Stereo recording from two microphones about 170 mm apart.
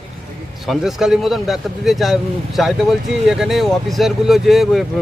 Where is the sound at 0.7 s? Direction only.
Centre (ahead or behind).